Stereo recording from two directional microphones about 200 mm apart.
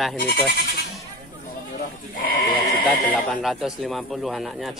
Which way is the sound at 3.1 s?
5° left (ahead or behind).